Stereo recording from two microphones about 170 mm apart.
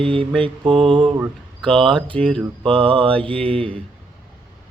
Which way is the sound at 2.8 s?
30° right (ahead or behind).